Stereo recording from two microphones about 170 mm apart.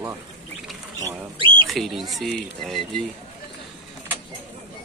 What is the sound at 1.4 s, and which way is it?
Speech, 30° right (ahead or behind).